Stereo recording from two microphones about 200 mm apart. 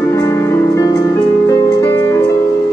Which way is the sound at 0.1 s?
15° left (ahead or behind).